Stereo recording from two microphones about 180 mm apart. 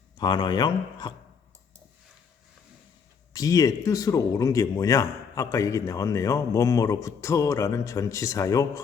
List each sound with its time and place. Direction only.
0.2 s speech: 25° left (ahead or behind)
3.3 s speech: 20° left (ahead or behind)